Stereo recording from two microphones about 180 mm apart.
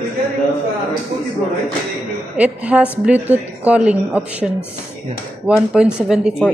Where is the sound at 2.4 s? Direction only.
5° right (ahead or behind).